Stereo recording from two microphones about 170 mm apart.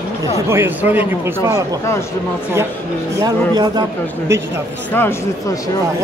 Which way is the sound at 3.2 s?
20° right (ahead or behind).